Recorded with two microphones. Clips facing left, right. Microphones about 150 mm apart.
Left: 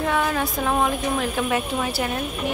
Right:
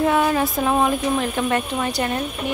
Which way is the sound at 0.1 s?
5° right (ahead or behind).